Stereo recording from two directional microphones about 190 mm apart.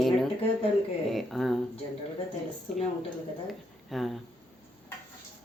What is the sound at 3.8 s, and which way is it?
Speech, centre (ahead or behind).